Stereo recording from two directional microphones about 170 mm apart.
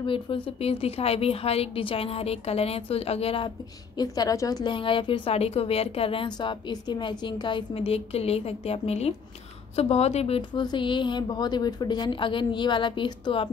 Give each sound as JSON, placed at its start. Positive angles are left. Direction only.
{"t": 0.0, "sound": "a woman's voice", "side_deg": 30}